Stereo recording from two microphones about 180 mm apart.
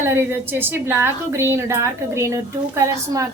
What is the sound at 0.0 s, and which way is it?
A woman's voice, 10° right (ahead or behind).